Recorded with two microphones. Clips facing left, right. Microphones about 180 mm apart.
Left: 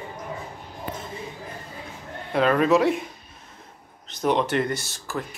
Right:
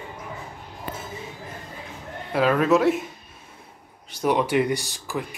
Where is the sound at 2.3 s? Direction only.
5° right (ahead or behind).